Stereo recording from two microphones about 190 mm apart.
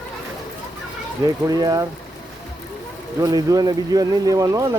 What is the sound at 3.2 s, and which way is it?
Speech, 20° right (ahead or behind).